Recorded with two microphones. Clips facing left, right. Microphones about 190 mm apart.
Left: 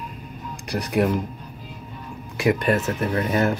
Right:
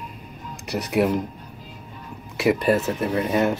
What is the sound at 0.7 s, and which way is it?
Speech, 5° right (ahead or behind).